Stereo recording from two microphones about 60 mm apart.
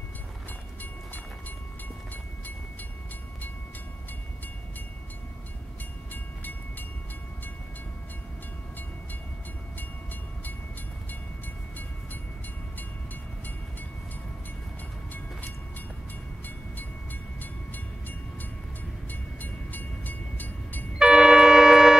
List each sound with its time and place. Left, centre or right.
16.4 s train: left
19.0 s train: left
21.0 s a sound: centre